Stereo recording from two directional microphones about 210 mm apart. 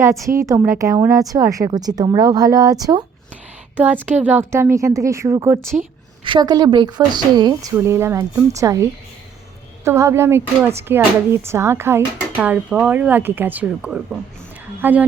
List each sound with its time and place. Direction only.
0.3 s speech: 15° right (ahead or behind)
4.1 s a woman's voice: 10° right (ahead or behind)